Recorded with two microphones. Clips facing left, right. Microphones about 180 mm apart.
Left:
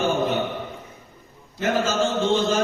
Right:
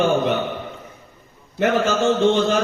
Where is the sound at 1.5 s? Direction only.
65° right (ahead or behind).